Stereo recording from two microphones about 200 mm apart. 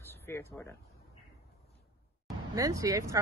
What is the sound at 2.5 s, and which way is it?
Speech, 15° right (ahead or behind).